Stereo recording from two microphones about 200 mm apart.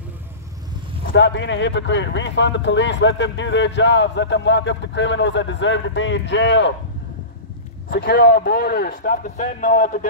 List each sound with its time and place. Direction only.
1.1 s speech: 60° left (ahead or behind)
8.0 s speech: 60° left (ahead or behind)
8.4 s a man's voice: 50° left (ahead or behind)